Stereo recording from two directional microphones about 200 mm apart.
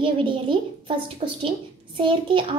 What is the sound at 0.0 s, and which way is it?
A child's voice, 25° right (ahead or behind).